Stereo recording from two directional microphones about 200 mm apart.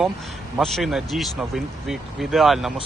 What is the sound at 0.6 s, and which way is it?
Speech, centre (ahead or behind).